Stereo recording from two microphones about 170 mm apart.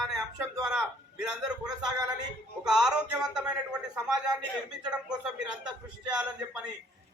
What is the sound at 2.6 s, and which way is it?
A man's voice, 5° right (ahead or behind).